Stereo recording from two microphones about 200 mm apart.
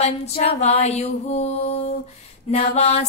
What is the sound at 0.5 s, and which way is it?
Music, 30° left (ahead or behind).